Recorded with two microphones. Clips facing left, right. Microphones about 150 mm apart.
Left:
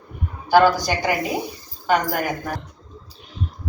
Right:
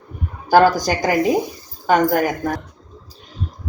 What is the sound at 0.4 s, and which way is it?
Speech, 40° right (ahead or behind).